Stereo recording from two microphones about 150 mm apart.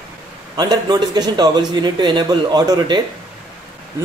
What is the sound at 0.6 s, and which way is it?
Speech, 25° right (ahead or behind).